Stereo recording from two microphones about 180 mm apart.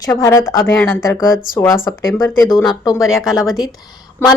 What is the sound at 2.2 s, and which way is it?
Speech, 20° left (ahead or behind).